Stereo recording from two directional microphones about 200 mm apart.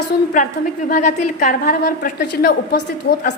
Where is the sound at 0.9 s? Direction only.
40° left (ahead or behind).